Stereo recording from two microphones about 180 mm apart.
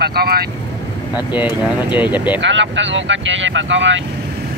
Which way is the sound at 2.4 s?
90° right.